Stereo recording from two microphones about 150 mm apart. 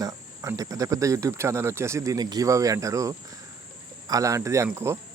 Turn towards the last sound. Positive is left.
turn(degrees=-20)  # may be behind; listen again after turning